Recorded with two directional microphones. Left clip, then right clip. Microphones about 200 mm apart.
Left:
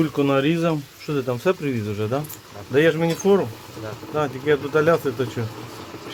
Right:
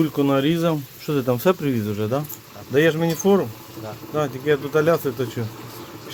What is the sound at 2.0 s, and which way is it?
Speech, 15° right (ahead or behind).